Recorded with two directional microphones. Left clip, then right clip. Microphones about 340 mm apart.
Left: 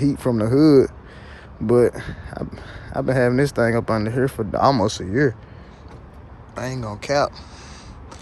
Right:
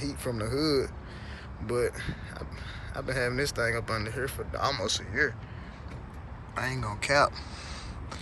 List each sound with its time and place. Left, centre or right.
0.0 s speech: left
6.5 s speech: centre